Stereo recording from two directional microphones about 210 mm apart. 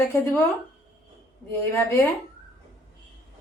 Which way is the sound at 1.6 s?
10° left (ahead or behind).